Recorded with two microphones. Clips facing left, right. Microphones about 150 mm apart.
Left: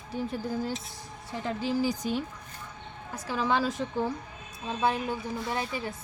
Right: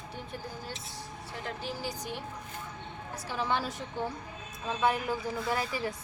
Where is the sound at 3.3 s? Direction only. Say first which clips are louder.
Left 5 dB; 90° left.